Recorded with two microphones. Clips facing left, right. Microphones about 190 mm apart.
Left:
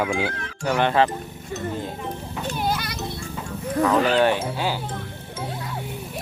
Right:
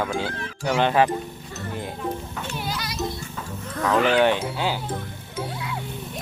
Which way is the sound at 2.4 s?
55° left (ahead or behind).